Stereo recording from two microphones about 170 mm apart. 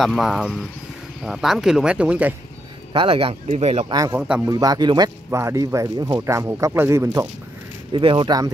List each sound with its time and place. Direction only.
0.0 s speech: centre (ahead or behind)
2.9 s speech: 30° right (ahead or behind)
3.9 s speech: 20° right (ahead or behind)
7.9 s speech: 30° right (ahead or behind)